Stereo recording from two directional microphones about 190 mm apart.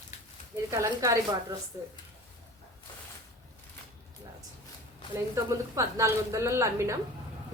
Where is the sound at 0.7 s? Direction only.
15° right (ahead or behind).